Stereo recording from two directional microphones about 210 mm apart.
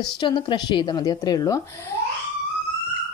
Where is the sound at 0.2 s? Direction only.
20° left (ahead or behind).